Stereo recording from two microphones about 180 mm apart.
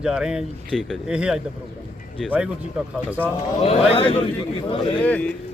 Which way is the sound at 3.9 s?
30° left (ahead or behind).